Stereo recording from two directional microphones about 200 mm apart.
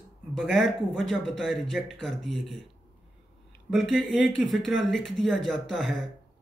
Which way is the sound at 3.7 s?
Centre (ahead or behind).